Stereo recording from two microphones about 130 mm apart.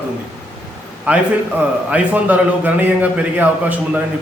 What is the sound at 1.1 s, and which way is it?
A man's voice, 10° right (ahead or behind).